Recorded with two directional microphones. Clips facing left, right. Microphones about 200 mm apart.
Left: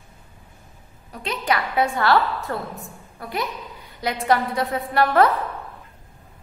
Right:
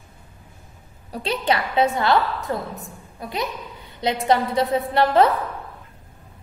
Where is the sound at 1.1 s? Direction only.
30° right (ahead or behind).